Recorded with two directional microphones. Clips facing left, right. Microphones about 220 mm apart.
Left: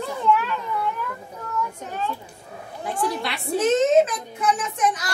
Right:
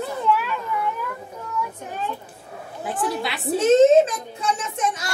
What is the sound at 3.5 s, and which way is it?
A child's voice, 25° right (ahead or behind).